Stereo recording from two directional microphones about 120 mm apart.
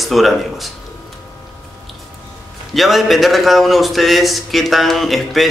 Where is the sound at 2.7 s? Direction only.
Centre (ahead or behind).